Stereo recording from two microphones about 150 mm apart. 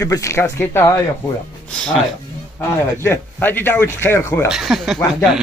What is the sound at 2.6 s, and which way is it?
A man's voice, 15° left (ahead or behind).